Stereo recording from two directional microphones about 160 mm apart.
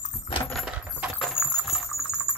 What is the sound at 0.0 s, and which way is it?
Keys jangling, 50° left (ahead or behind).